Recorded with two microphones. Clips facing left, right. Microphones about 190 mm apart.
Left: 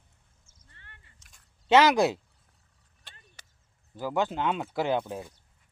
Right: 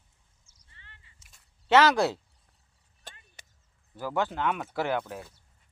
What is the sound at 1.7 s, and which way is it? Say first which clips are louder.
Speech: left 1 dB; 15° left (ahead or behind).